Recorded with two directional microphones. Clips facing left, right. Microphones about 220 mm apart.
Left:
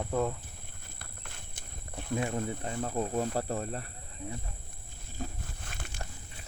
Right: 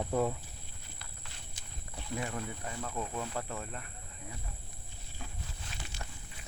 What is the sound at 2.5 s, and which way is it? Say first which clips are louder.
Speech: left 6 dB; 30° left (ahead or behind).